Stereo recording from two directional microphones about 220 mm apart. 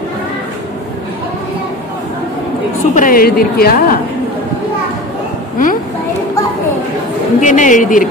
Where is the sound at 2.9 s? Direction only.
40° left (ahead or behind).